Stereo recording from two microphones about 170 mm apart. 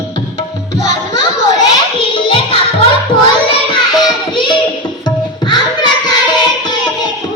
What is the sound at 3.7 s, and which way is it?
Child singing, 30° left (ahead or behind).